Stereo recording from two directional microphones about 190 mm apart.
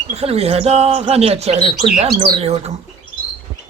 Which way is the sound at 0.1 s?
30° right (ahead or behind).